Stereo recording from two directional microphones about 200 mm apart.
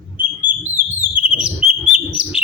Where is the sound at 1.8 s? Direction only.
5° right (ahead or behind).